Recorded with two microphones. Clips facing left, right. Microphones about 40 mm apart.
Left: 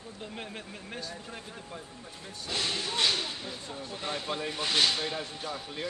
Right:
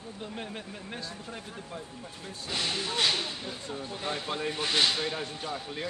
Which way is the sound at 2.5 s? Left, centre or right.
Right.